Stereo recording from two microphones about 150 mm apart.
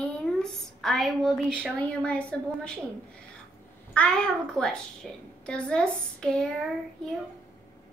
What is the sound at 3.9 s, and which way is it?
A child's voice, 5° left (ahead or behind).